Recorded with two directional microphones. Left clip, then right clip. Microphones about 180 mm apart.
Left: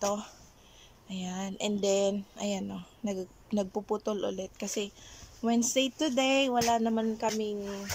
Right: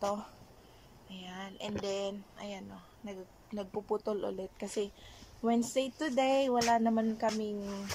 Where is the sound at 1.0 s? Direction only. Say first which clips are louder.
Left 6 dB; 25° left (ahead or behind).